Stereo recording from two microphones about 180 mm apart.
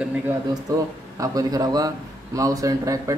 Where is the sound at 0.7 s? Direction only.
20° right (ahead or behind).